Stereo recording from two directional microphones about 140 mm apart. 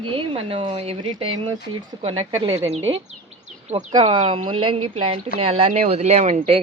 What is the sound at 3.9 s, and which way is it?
Speech, 35° right (ahead or behind).